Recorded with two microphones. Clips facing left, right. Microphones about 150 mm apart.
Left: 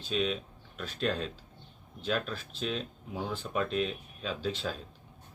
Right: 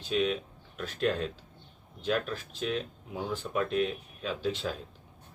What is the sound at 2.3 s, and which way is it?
Speech, 15° right (ahead or behind).